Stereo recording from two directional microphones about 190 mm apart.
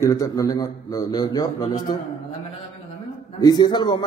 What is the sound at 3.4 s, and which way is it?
Speech, 20° left (ahead or behind).